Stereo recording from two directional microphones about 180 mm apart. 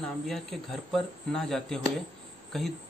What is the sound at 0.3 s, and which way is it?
Speech, centre (ahead or behind).